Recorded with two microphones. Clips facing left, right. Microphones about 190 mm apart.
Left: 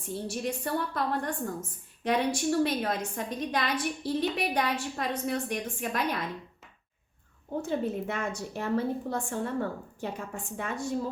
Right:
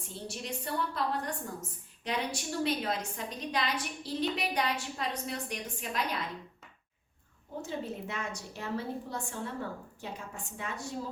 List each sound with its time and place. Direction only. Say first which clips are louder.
0.3 s a woman's voice: left 5 dB; 55° left (ahead or behind)
7.7 s a woman's voice: left 7 dB; 55° left (ahead or behind)